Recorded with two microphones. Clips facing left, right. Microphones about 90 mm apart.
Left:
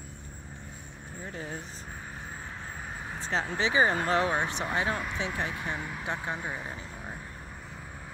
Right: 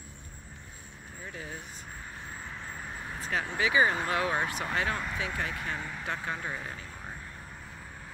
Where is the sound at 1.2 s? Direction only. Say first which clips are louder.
Left 3 dB; 30° left (ahead or behind).